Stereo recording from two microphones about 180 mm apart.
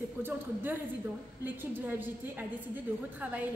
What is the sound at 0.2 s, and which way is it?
A woman's voice, 10° right (ahead or behind).